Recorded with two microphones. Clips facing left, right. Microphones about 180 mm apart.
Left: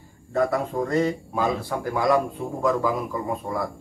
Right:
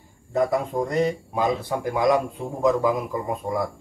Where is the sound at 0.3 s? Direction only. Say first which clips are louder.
Right 1 dB; 15° right (ahead or behind).